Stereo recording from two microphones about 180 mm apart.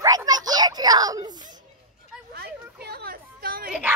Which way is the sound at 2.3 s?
60° right (ahead or behind).